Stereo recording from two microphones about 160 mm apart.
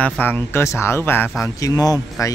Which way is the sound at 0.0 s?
10° left (ahead or behind).